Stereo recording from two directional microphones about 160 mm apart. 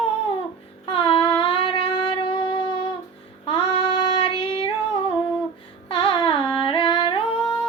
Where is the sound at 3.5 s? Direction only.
35° left (ahead or behind).